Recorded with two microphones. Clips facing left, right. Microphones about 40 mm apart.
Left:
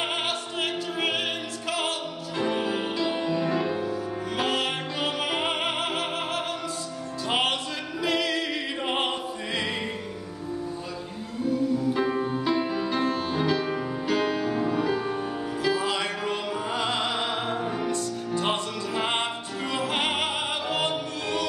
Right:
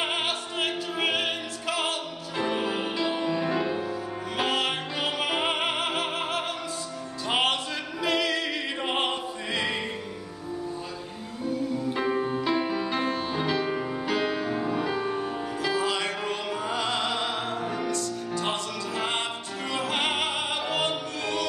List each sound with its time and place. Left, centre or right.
0.0 s opera: centre
4.4 s music: centre
8.0 s opera: centre
11.9 s music: centre
19.7 s opera: centre
20.6 s music: centre